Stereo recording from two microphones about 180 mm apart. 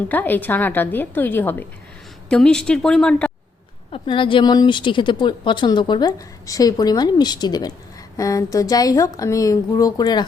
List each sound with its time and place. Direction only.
0.1 s a woman's voice: 10° left (ahead or behind)
3.9 s speech: 30° left (ahead or behind)